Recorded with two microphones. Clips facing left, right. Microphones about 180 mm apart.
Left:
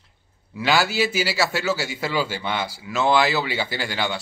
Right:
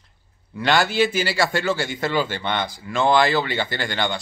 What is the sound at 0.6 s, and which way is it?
A man's voice, 5° left (ahead or behind).